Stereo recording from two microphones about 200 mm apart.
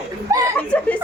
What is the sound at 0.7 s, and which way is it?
Speech, 5° left (ahead or behind).